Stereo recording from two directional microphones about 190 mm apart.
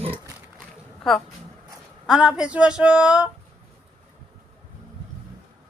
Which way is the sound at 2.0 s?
5° right (ahead or behind).